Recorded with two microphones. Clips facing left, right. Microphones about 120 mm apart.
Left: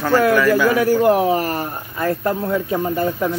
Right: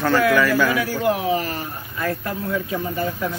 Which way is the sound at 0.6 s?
45° left (ahead or behind).